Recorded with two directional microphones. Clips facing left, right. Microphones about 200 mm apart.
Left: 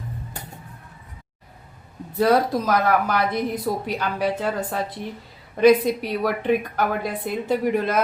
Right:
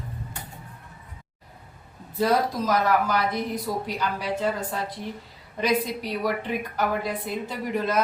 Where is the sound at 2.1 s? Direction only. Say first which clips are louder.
Left 4 dB; 60° left (ahead or behind).